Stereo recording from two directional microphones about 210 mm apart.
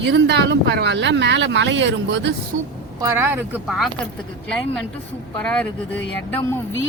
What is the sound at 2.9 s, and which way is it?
Speech, 10° right (ahead or behind).